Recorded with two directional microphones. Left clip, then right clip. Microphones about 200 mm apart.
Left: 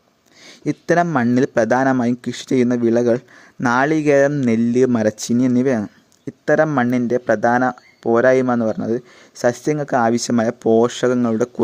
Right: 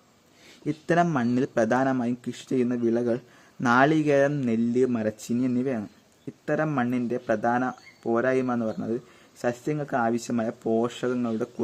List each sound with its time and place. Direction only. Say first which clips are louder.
0.4 s a man's voice: left 8 dB; 40° left (ahead or behind)